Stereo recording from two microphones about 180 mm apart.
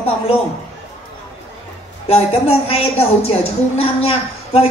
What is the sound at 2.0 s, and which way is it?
A woman's voice, 35° left (ahead or behind).